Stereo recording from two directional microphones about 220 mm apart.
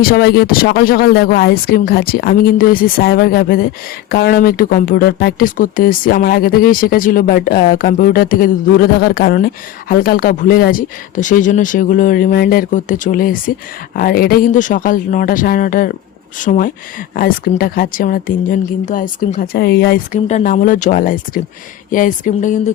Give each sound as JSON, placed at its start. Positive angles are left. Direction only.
{"t": 0.0, "sound": "speech", "side_deg": 45}
{"t": 20.2, "sound": "speech", "side_deg": 35}